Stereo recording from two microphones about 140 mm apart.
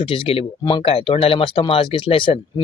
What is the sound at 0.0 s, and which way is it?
Speech, 40° left (ahead or behind).